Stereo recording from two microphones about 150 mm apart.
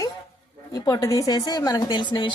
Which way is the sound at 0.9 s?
25° left (ahead or behind).